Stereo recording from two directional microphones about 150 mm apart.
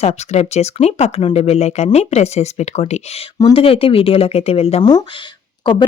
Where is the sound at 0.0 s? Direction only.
45° left (ahead or behind).